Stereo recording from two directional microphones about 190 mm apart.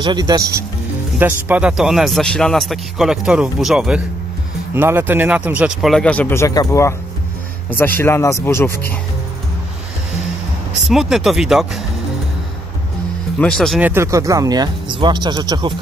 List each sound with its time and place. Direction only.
0.0 s speech: 20° right (ahead or behind)
1.2 s speech: 5° right (ahead or behind); by 8.9 s 15° left (ahead or behind)
10.8 s speech: centre (ahead or behind)
13.4 s speech: 5° left (ahead or behind)
13.7 s speech: 10° right (ahead or behind)